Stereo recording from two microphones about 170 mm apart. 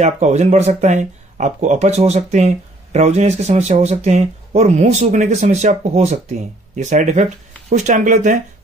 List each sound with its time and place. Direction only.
0.0 s speech: 40° right (ahead or behind)